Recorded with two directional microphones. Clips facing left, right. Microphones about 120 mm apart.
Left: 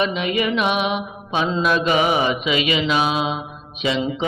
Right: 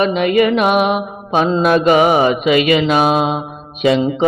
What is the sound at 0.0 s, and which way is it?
Mantra, 50° right (ahead or behind).